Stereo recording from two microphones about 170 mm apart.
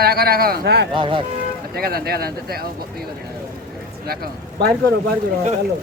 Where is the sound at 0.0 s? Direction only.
65° right (ahead or behind).